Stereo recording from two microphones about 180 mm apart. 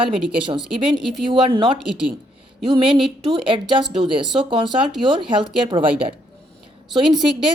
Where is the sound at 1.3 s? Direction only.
30° right (ahead or behind).